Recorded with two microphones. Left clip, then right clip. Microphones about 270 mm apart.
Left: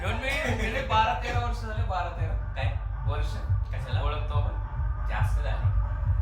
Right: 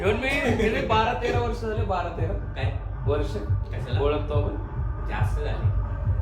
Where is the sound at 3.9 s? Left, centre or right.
Centre.